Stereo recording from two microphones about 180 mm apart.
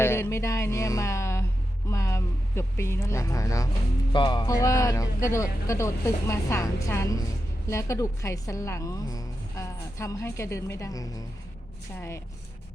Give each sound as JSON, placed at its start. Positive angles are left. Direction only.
{"t": 0.0, "sound": "music", "side_deg": 15}
{"t": 1.9, "sound": "a woman's voice", "side_deg": 15}